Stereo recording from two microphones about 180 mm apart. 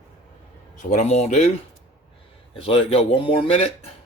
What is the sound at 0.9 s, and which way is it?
Speech, 40° left (ahead or behind).